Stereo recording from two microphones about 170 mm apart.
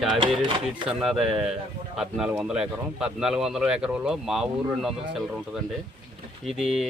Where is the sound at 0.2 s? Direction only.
30° right (ahead or behind).